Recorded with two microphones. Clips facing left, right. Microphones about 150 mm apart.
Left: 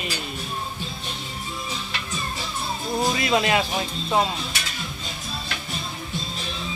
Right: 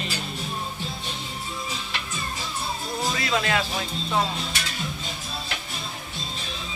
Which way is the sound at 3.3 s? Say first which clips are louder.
Left 3 dB; 20° left (ahead or behind).